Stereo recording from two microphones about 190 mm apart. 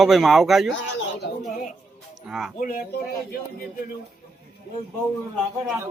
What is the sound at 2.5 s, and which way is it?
Speech, 45° left (ahead or behind).